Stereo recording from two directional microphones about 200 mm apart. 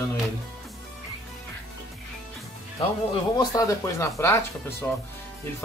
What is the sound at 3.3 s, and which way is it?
Speech, 15° left (ahead or behind).